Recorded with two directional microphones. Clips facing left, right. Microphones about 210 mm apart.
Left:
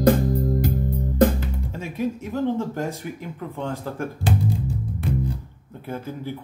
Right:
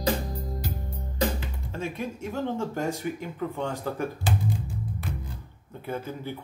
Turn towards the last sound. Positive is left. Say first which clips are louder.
# left 2 dB
turn(degrees=0)  # may be behind; listen again after turning